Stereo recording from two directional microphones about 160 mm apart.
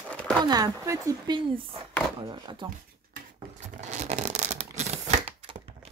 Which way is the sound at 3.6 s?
45° right (ahead or behind).